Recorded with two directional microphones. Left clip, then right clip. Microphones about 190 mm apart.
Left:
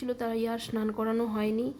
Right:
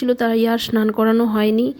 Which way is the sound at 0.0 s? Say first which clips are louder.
Right 14 dB; 30° right (ahead or behind).